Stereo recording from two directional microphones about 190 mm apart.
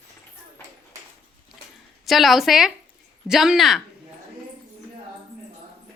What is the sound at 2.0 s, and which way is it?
A woman's voice, centre (ahead or behind).